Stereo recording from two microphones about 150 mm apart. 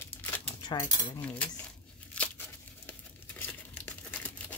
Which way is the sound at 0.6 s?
25° left (ahead or behind).